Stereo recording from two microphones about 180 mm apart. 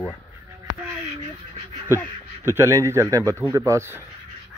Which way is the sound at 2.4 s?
15° right (ahead or behind).